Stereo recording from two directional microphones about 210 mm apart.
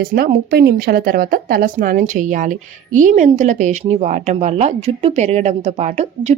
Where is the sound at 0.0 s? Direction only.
45° right (ahead or behind).